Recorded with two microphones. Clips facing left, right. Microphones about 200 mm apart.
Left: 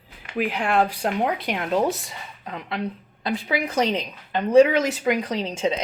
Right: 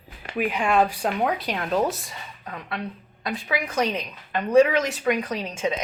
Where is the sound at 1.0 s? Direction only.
15° left (ahead or behind).